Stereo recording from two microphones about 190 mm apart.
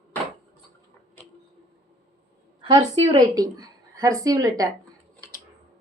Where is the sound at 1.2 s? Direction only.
5° left (ahead or behind).